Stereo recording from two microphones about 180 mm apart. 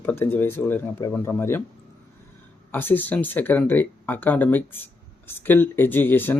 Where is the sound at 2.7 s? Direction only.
10° left (ahead or behind).